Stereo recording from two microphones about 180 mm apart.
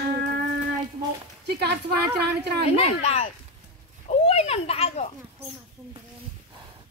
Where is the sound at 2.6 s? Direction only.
35° left (ahead or behind).